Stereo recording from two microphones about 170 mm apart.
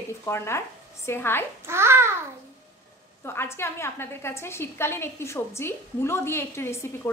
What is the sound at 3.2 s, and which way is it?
A woman's voice, 15° left (ahead or behind).